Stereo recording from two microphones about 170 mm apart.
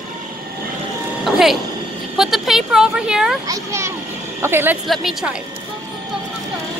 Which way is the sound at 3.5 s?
15° right (ahead or behind).